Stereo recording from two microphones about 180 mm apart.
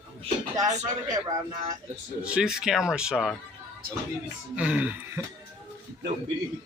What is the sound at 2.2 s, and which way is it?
Speech, 5° right (ahead or behind).